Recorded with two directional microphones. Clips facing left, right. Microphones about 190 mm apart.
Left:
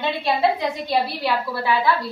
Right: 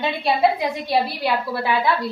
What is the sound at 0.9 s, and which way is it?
A woman's voice, 15° right (ahead or behind).